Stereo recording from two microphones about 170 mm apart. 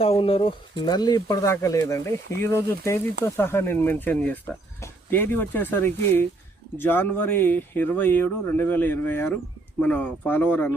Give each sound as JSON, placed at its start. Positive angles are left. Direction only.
{"t": 0.0, "sound": "speech", "side_deg": 35}